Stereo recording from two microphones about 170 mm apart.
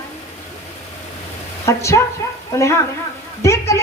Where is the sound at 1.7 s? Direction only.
15° left (ahead or behind).